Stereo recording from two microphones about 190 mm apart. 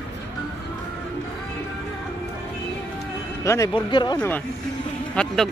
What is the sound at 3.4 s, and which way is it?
Speech, 15° left (ahead or behind).